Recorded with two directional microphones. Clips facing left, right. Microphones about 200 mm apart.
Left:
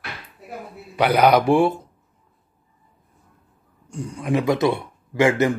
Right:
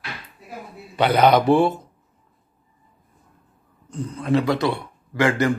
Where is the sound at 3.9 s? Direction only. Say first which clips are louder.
Right 2 dB; 15° left (ahead or behind).